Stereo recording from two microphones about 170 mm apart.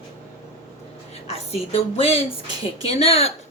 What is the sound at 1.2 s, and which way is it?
A woman's voice, 35° left (ahead or behind).